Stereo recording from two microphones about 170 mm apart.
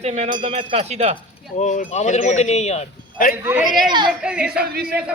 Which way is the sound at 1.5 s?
45° left (ahead or behind).